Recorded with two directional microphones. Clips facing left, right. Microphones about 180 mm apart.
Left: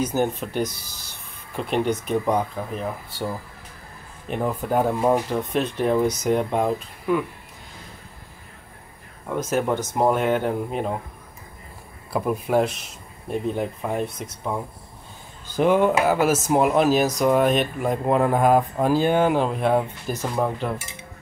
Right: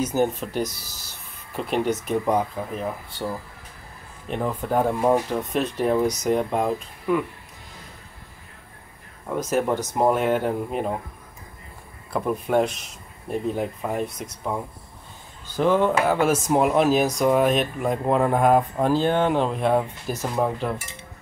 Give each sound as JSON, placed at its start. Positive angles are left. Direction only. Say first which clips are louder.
{"t": 0.0, "sound": "speech", "louder": "even", "side_deg": 0}
{"t": 4.3, "sound": "speech", "louder": "left 1 dB", "side_deg": 5}
{"t": 9.3, "sound": "speech", "louder": "even", "side_deg": 0}
{"t": 12.1, "sound": "speech", "louder": "left 1 dB", "side_deg": 5}
{"t": 15.5, "sound": "speech", "louder": "left 1 dB", "side_deg": 15}